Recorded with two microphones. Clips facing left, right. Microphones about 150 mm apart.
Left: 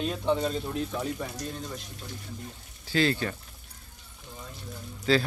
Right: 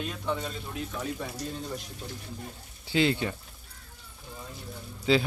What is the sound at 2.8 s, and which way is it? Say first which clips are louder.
Speech: even; 20° right (ahead or behind).